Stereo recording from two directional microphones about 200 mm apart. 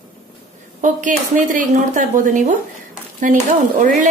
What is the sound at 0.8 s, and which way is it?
A woman's voice, 40° right (ahead or behind).